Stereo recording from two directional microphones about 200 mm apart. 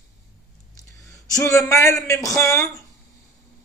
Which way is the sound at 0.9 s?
15° left (ahead or behind).